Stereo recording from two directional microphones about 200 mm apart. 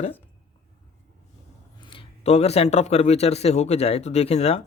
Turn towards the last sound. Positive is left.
turn(degrees=30)  # may be behind; listen again after turning